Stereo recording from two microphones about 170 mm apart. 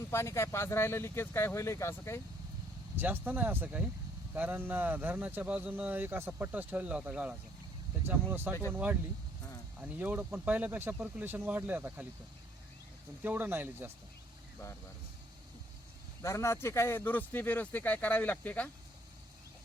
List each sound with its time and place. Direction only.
0.1 s speech: 15° left (ahead or behind)
2.9 s speech: 10° right (ahead or behind)
13.2 s speech: 10° right (ahead or behind)
16.2 s speech: 15° left (ahead or behind)